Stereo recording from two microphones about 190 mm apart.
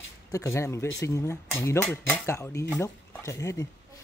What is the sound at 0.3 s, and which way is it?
Speech, 15° left (ahead or behind).